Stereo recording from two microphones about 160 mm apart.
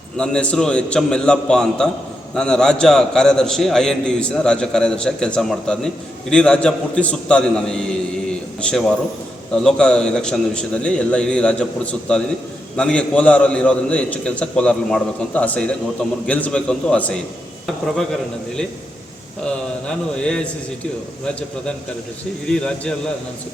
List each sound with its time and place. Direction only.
0.2 s a man's voice: 5° left (ahead or behind)
20.1 s a man's voice: 5° left (ahead or behind)
22.4 s a man's voice: 5° left (ahead or behind)